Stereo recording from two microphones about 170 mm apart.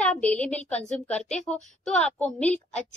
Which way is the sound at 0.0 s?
5° left (ahead or behind).